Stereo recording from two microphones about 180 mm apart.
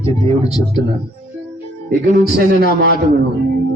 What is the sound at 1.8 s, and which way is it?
A man's voice, 60° right (ahead or behind).